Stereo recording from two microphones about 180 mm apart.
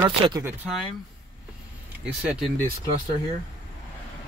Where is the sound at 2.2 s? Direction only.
5° right (ahead or behind).